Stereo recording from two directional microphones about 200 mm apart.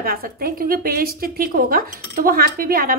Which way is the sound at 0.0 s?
50° right (ahead or behind).